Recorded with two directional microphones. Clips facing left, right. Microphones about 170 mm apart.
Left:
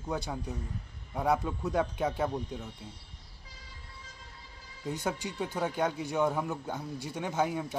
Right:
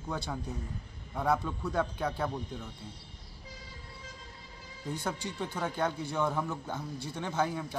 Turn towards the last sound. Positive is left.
turn(degrees=15)  # may be behind; listen again after turning